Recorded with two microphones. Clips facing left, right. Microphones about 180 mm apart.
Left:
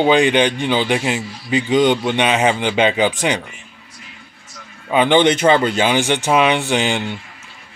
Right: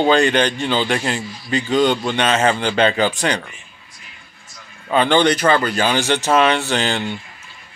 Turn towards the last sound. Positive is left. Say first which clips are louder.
# left 2 dB
turn(degrees=15)  # may be behind; listen again after turning